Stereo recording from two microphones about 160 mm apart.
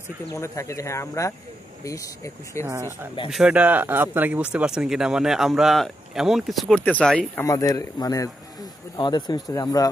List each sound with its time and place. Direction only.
0.3 s speech: 20° left (ahead or behind)
3.3 s speech: 5° right (ahead or behind)
7.4 s speech: 20° left (ahead or behind)